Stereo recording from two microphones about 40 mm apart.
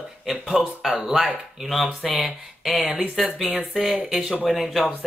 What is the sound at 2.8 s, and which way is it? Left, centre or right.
Speech, right.